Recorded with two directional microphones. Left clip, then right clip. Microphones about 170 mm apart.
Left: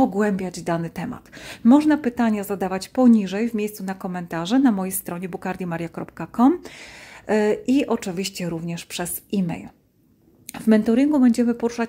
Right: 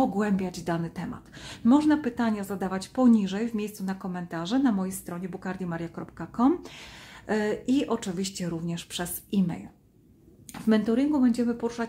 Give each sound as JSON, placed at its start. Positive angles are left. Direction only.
{"t": 0.0, "sound": "a woman's voice", "side_deg": 30}